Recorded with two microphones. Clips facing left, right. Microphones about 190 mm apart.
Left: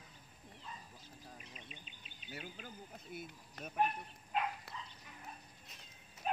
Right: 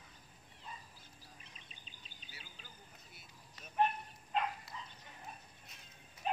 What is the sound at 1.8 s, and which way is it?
Bird, 35° right (ahead or behind).